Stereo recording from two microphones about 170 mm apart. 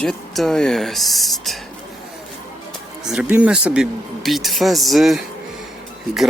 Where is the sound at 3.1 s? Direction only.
5° right (ahead or behind).